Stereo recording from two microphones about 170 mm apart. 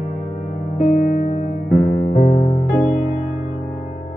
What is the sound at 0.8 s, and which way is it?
Music, 50° left (ahead or behind).